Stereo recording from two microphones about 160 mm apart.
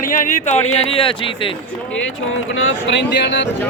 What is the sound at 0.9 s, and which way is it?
Speech, 35° left (ahead or behind).